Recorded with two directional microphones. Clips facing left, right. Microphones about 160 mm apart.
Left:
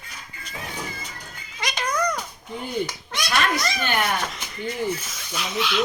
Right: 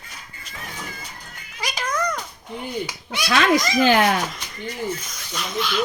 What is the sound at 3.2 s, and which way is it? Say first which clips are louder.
Speech: right 5 dB; 90° right.